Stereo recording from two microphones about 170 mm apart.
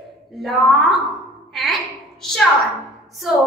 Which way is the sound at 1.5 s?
Centre (ahead or behind).